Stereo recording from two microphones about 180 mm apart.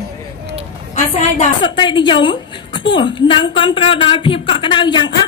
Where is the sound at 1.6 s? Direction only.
25° left (ahead or behind).